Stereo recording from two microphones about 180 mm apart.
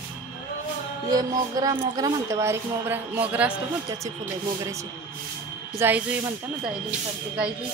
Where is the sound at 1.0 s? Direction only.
20° right (ahead or behind).